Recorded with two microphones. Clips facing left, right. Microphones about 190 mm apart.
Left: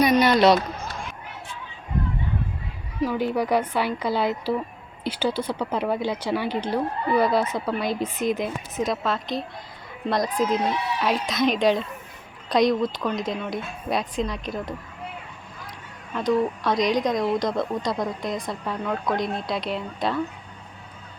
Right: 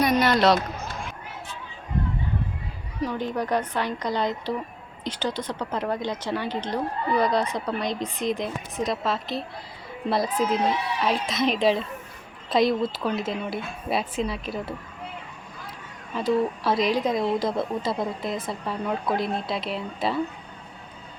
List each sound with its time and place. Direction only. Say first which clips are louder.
0.0 s a sound: left 3 dB; centre (ahead or behind)
3.0 s a woman's voice: left 4 dB; 5° left (ahead or behind)
16.1 s speech: left 1 dB; 5° right (ahead or behind)